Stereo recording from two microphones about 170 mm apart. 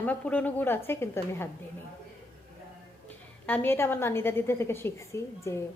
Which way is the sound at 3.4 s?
10° left (ahead or behind).